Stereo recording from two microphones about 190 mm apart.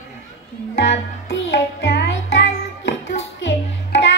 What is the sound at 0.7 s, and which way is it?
Music, 65° left (ahead or behind).